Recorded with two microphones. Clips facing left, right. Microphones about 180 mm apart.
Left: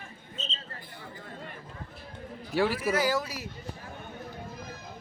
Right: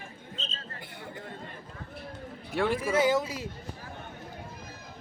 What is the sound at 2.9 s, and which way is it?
Speech, 25° right (ahead or behind).